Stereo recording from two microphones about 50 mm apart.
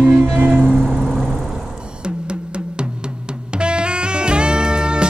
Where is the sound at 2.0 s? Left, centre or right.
Centre.